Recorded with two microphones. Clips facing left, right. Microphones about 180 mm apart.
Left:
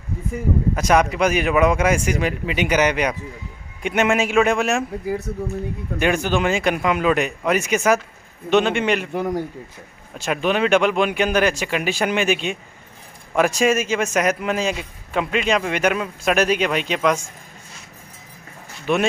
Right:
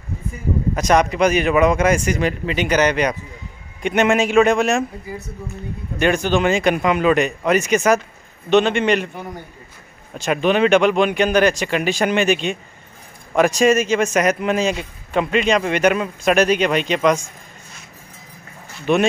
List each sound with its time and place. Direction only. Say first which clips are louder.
0.7 s speech: right 3 dB; 5° left (ahead or behind)
9.1 s speech: left 9 dB; 90° left
10.1 s speech: right 3 dB; 5° left (ahead or behind)
18.9 s speech: right 3 dB; 5° left (ahead or behind)